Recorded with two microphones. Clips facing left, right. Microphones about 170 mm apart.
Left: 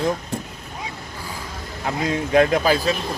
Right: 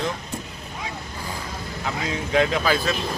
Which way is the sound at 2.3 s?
45° left (ahead or behind).